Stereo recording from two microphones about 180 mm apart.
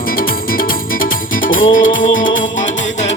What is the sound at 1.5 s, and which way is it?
Music, 50° left (ahead or behind).